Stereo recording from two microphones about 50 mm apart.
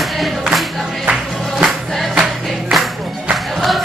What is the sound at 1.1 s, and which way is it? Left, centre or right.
Music, centre.